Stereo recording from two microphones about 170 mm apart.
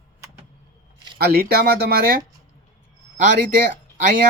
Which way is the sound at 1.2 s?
65° right (ahead or behind).